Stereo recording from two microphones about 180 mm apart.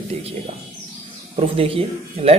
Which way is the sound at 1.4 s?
35° right (ahead or behind).